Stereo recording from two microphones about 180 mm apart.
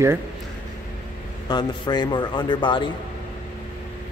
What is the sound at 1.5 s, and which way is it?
Speech, 25° left (ahead or behind).